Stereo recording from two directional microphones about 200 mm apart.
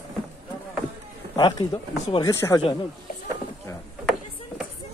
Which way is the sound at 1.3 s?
20° left (ahead or behind).